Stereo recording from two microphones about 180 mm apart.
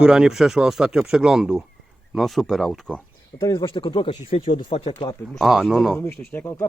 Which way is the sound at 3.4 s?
25° left (ahead or behind).